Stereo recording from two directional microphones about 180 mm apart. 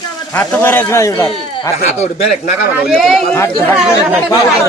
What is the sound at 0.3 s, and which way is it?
A man's voice, 10° left (ahead or behind).